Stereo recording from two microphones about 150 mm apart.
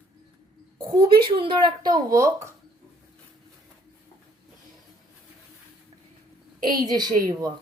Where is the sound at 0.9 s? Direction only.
30° right (ahead or behind).